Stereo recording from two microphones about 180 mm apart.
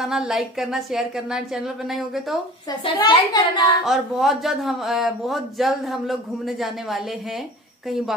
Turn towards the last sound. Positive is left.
turn(degrees=0)  # may be behind; listen again after turning